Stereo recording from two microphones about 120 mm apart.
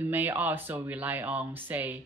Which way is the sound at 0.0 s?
15° right (ahead or behind).